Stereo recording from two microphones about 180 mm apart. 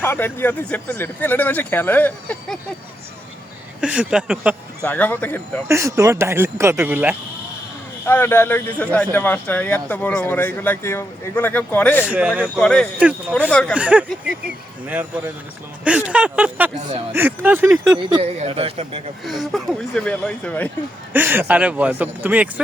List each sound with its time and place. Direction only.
0.0 s speech: 10° left (ahead or behind)
3.8 s speech: 5° right (ahead or behind)
4.8 s speech: 10° left (ahead or behind)
5.6 s speech: 15° right (ahead or behind)
8.0 s speech: 10° left (ahead or behind)
12.0 s speech: 5° right (ahead or behind)
13.7 s speech: 5° right (ahead or behind)
15.8 s speech: 5° right (ahead or behind)
18.2 s speech: 35° right (ahead or behind)
19.2 s speech: centre (ahead or behind)
21.1 s speech: 10° right (ahead or behind)